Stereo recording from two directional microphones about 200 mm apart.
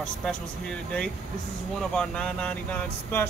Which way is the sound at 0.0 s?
5° left (ahead or behind).